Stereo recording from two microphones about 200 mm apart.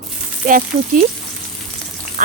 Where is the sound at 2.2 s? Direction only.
40° right (ahead or behind).